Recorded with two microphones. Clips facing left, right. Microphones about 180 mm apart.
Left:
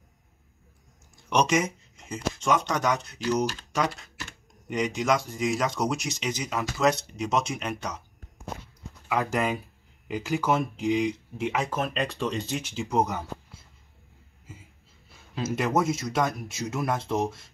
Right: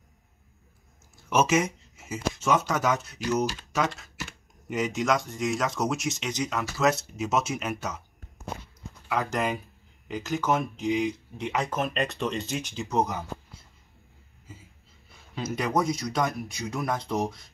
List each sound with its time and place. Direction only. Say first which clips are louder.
1.1 s speech: right 1 dB; 5° right (ahead or behind)
9.1 s speech: left 1 dB; 5° left (ahead or behind)
11.8 s speech: even; 5° right (ahead or behind)
15.3 s speech: left 1 dB; 5° left (ahead or behind)